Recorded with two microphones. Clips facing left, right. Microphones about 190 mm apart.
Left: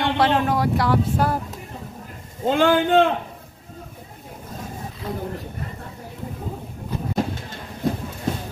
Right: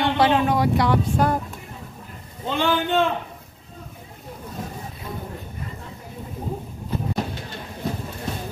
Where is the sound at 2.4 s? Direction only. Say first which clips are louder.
Left 5 dB; 50° left (ahead or behind).